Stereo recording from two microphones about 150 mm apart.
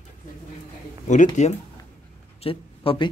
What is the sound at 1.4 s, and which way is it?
Speech, 50° left (ahead or behind).